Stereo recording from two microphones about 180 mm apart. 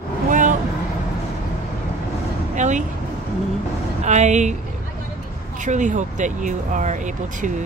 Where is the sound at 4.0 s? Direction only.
40° right (ahead or behind).